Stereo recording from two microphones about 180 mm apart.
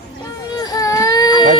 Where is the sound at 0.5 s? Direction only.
20° left (ahead or behind).